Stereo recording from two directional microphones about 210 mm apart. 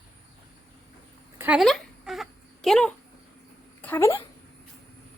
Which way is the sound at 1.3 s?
5° right (ahead or behind).